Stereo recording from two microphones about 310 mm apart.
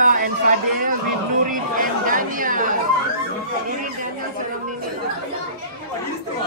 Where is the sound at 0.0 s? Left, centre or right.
Right.